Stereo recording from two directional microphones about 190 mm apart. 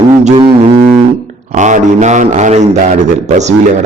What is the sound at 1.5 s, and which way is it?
Mantra, 40° right (ahead or behind).